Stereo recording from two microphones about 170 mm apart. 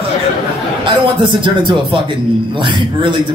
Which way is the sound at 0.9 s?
30° right (ahead or behind).